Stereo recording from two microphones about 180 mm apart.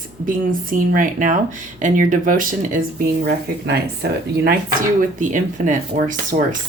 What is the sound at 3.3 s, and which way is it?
Speech, 60° right (ahead or behind).